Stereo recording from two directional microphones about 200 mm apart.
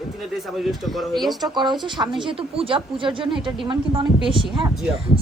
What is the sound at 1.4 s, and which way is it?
A woman's voice, 20° right (ahead or behind).